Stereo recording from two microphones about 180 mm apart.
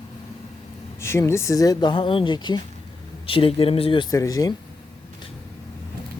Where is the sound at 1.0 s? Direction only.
15° left (ahead or behind).